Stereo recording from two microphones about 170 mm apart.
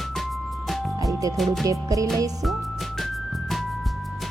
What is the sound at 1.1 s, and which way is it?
Music, 20° right (ahead or behind).